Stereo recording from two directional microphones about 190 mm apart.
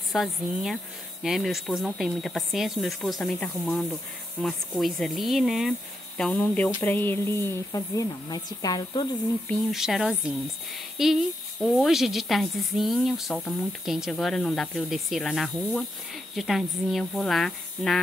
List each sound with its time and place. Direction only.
0.1 s a woman's voice: centre (ahead or behind); by 9.0 s 20° left (ahead or behind)
9.5 s a woman's voice: centre (ahead or behind)